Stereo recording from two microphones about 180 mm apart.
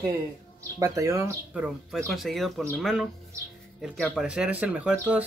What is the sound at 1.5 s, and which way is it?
Speech, 5° right (ahead or behind).